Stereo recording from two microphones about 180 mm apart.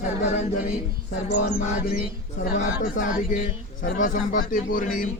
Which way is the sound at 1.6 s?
50° left (ahead or behind).